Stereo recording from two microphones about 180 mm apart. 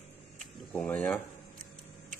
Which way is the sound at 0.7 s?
5° left (ahead or behind).